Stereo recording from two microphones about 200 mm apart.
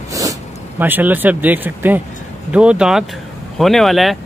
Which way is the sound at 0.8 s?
10° right (ahead or behind).